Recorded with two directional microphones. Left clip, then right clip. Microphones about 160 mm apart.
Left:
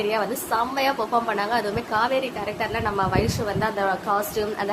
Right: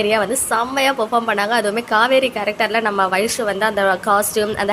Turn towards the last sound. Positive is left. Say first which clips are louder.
# right 7 dB
turn(degrees=-30)  # may be behind; listen again after turning